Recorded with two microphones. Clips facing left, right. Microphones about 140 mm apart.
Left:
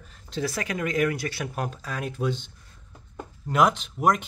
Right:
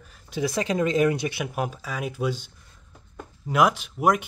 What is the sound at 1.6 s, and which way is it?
Speech, 5° right (ahead or behind).